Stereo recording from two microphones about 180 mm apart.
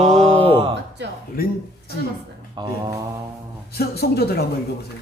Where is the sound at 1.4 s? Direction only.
55° left (ahead or behind).